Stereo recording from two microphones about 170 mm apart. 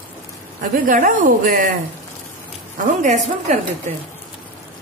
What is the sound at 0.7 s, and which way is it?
Speech, 55° right (ahead or behind).